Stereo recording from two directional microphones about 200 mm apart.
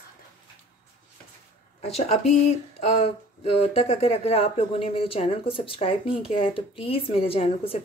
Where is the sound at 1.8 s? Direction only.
35° left (ahead or behind).